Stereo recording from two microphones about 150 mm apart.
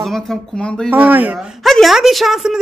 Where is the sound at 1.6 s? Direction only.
Centre (ahead or behind).